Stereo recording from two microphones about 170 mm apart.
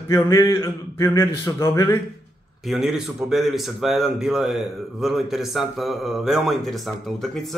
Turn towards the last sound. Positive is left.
turn(degrees=0)  # may be behind; listen again after turning